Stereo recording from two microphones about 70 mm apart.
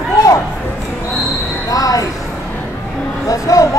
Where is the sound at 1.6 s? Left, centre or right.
Left.